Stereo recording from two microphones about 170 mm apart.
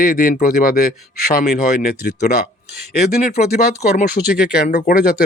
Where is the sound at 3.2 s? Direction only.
65° left (ahead or behind).